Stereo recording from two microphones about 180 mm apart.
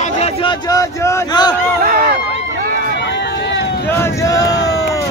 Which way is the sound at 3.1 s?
70° left (ahead or behind).